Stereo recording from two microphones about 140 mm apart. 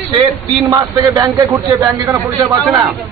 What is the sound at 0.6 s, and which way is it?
A man's voice, 30° right (ahead or behind).